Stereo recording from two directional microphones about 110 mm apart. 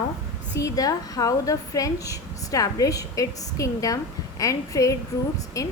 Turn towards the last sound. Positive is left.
turn(degrees=30)  # may be behind; listen again after turning